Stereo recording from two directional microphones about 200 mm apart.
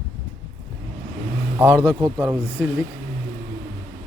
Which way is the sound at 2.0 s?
15° right (ahead or behind).